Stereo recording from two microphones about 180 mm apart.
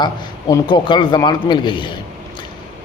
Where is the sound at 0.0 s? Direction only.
25° left (ahead or behind).